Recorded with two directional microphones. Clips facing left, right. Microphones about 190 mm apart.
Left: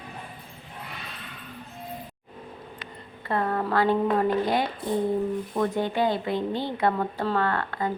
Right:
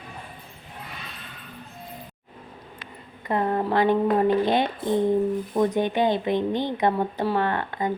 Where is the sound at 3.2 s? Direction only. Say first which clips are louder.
Right 3 dB; 20° right (ahead or behind).